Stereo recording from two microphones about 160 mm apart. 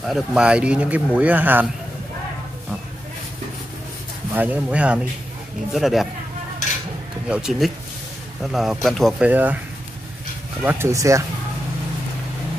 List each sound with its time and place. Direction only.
0.0 s speech: 5° right (ahead or behind)
4.3 s speech: 10° right (ahead or behind)
7.2 s speech: 5° right (ahead or behind)
9.3 s speech: 10° right (ahead or behind)
10.6 s speech: 15° right (ahead or behind)